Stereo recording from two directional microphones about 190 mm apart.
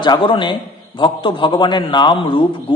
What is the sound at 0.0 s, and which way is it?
A man's voice, 25° left (ahead or behind).